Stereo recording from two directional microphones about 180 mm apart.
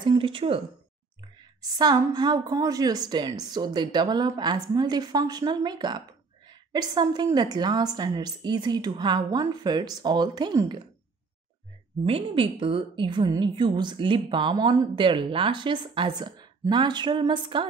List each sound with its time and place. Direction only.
0.0 s a woman's voice: 25° right (ahead or behind)
1.6 s a woman's voice: 20° right (ahead or behind)
12.0 s a woman's voice: 30° right (ahead or behind)